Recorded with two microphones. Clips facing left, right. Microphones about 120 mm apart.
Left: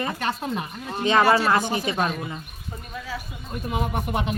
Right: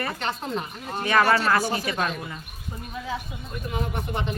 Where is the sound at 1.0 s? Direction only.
20° left (ahead or behind).